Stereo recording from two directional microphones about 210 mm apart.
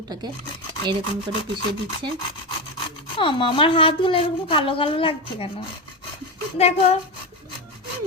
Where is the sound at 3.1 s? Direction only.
25° left (ahead or behind).